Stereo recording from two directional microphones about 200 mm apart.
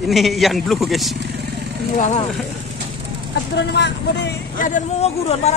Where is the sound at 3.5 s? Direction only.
60° left (ahead or behind).